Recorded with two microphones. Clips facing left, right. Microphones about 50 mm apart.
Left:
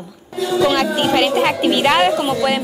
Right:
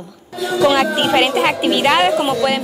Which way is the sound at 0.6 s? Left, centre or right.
Centre.